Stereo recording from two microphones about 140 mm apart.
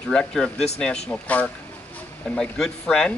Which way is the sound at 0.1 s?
5° left (ahead or behind).